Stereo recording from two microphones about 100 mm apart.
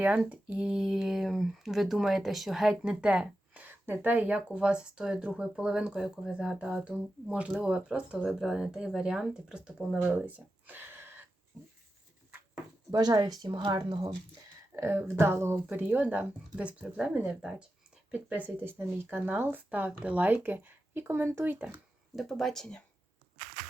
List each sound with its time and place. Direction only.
0.0 s speech: 15° right (ahead or behind)
10.2 s a sound: 15° right (ahead or behind)
12.9 s speech: 40° right (ahead or behind)
14.8 s speech: 25° right (ahead or behind)
22.1 s speech: centre (ahead or behind)